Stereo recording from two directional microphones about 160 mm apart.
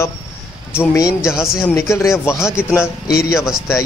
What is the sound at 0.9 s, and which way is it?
Speech, 20° left (ahead or behind).